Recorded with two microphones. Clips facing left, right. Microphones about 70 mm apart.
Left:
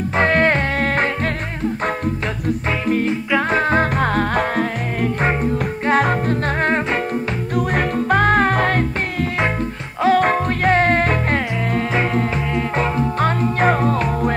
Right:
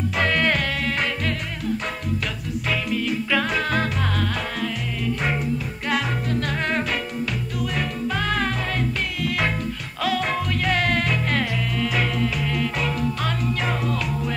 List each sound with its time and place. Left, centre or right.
0.1 s music: left
3.1 s music: left
7.5 s music: left
8.5 s music: left
10.0 s music: left